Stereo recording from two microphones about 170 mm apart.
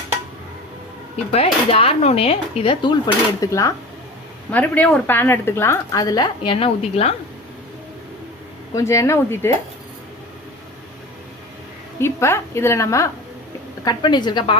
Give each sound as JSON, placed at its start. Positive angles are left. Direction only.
{"t": 1.1, "sound": "speech", "side_deg": 35}
{"t": 3.4, "sound": "a woman's voice", "side_deg": 20}
{"t": 8.7, "sound": "a woman's voice", "side_deg": 15}
{"t": 11.9, "sound": "a woman's voice", "side_deg": 15}